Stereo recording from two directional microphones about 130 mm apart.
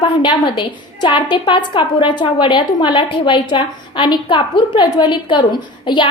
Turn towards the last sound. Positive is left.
turn(degrees=35)  # may be behind; listen again after turning